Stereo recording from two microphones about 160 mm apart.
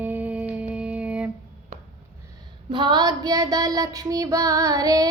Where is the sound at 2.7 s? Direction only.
30° right (ahead or behind).